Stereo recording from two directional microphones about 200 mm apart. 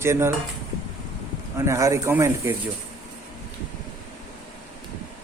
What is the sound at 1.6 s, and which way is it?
Speech, 15° right (ahead or behind).